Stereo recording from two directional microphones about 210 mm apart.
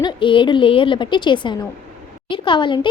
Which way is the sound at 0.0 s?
25° left (ahead or behind).